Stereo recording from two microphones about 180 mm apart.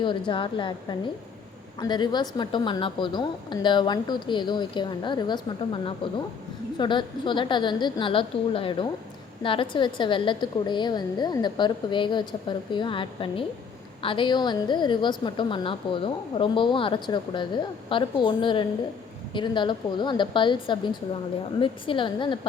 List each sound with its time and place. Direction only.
0.3 s a woman's voice: 25° left (ahead or behind)